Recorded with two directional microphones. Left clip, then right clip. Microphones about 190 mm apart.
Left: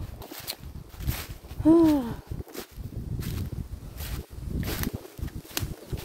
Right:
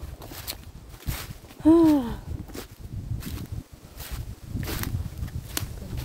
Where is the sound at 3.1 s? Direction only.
Centre (ahead or behind).